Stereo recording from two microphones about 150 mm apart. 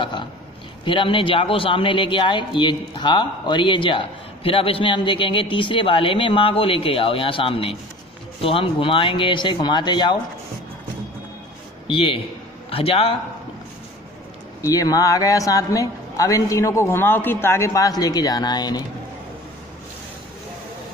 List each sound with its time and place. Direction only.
0.0 s a man's voice: 30° left (ahead or behind)
11.9 s a man's voice: 35° left (ahead or behind)
14.6 s a man's voice: 25° left (ahead or behind)